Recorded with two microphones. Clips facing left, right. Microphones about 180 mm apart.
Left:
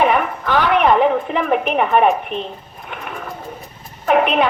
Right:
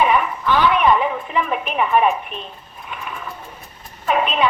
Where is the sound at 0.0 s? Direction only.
60° left (ahead or behind).